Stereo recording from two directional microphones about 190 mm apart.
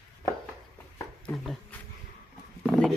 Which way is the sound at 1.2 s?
5° left (ahead or behind).